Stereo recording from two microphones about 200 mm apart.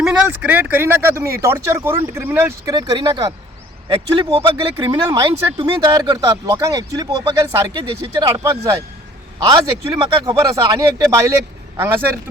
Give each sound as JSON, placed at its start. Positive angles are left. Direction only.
{"t": 0.0, "sound": "speech", "side_deg": -5}